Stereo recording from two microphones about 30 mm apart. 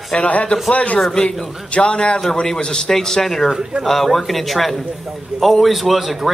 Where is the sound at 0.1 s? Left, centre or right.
Left.